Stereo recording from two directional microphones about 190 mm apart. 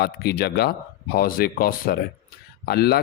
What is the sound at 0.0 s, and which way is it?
Speech, 55° left (ahead or behind).